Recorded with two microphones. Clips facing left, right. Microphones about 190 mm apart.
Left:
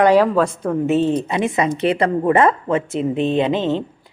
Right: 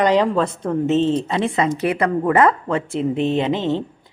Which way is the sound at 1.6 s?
30° left (ahead or behind).